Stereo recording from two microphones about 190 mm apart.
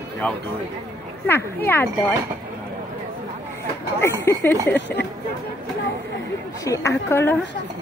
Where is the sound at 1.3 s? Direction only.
10° left (ahead or behind).